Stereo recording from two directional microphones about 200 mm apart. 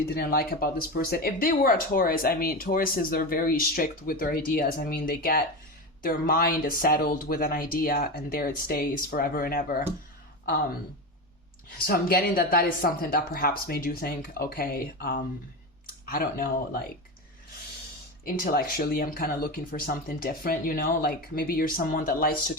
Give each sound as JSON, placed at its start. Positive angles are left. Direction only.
{"t": 0.0, "sound": "speech", "side_deg": 50}
{"t": 11.9, "sound": "speech", "side_deg": 50}
{"t": 18.4, "sound": "speech", "side_deg": 50}